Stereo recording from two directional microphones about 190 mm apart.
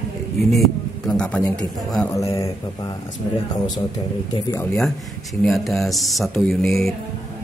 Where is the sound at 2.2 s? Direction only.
15° left (ahead or behind).